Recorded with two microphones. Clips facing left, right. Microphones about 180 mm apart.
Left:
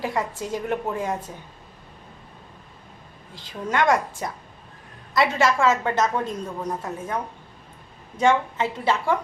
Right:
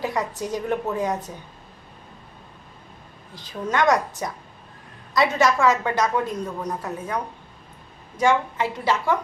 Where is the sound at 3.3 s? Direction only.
25° left (ahead or behind).